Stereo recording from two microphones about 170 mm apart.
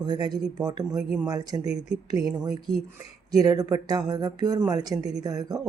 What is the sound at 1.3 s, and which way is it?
Speech, 25° right (ahead or behind).